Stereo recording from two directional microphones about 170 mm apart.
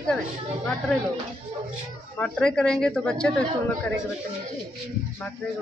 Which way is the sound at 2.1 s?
5° left (ahead or behind).